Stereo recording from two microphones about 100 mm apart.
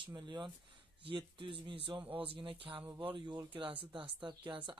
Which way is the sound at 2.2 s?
60° right (ahead or behind).